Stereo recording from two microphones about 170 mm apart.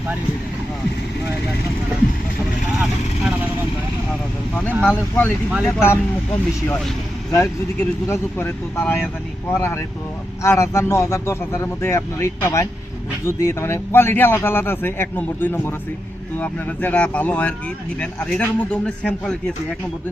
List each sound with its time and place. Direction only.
4.5 s speech: 5° left (ahead or behind)
7.8 s speech: 15° left (ahead or behind)